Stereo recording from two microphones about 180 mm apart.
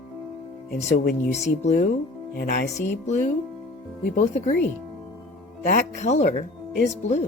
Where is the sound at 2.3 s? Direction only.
70° left (ahead or behind).